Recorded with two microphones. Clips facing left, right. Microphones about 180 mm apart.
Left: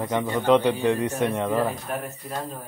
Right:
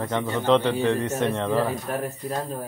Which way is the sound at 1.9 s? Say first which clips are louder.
Right 3 dB; 40° right (ahead or behind).